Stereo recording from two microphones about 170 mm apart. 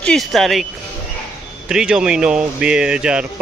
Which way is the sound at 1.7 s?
5° right (ahead or behind).